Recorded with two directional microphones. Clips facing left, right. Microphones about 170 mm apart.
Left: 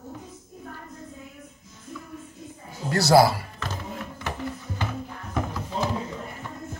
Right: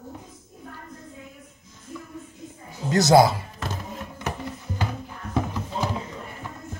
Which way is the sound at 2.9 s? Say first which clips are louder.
Right 1 dB; 20° right (ahead or behind).